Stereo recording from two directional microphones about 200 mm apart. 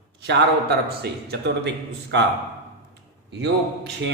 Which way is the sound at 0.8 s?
55° right (ahead or behind).